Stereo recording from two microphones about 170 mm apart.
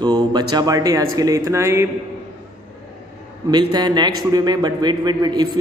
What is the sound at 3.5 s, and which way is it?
Speech, 25° right (ahead or behind).